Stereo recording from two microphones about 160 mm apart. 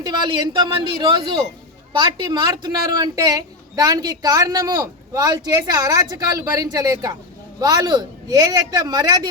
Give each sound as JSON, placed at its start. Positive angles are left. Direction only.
{"t": 0.0, "sound": "a woman's voice", "side_deg": -25}